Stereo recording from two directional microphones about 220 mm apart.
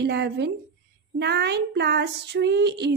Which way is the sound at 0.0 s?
50° right (ahead or behind).